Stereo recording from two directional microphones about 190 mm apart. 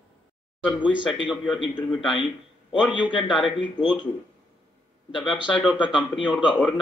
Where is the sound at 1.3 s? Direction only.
Centre (ahead or behind).